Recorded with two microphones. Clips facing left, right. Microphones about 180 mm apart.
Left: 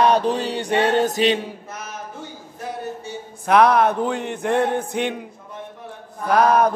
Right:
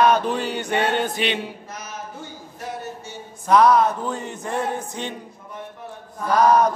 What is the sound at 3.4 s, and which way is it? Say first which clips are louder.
A man's voice: even; 60° left (ahead or behind).